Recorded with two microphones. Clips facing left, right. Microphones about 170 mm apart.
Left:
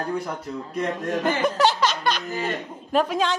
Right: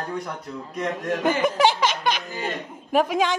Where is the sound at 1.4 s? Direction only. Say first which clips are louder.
Even; 15° right (ahead or behind).